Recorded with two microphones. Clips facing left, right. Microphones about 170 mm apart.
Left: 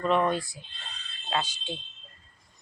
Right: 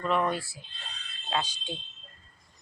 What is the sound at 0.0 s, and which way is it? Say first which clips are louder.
Speech: left 3 dB; centre (ahead or behind).